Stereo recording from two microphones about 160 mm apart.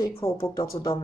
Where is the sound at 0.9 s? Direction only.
35° left (ahead or behind).